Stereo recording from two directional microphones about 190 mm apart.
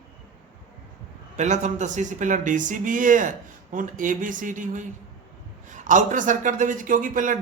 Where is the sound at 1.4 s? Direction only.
40° right (ahead or behind).